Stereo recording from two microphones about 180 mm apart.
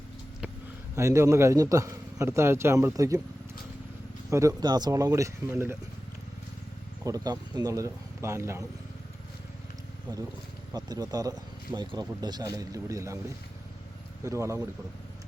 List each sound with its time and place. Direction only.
0.9 s a man's voice: 15° right (ahead or behind)
4.3 s a man's voice: 15° right (ahead or behind)
7.0 s a man's voice: 20° right (ahead or behind)
10.7 s speech: 20° right (ahead or behind)
14.3 s a man's voice: 15° right (ahead or behind)